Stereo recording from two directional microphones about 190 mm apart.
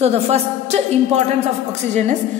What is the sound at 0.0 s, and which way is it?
A woman's voice, 35° right (ahead or behind).